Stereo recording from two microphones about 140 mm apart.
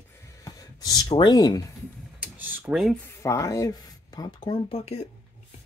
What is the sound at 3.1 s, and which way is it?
Speech, 20° left (ahead or behind).